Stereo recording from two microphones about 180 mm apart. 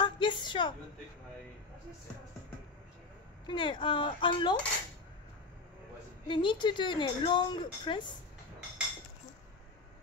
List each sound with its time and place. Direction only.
0.0 s a sound: 25° left (ahead or behind)
3.4 s a woman's voice: 25° left (ahead or behind)
6.2 s a woman's voice: 25° left (ahead or behind)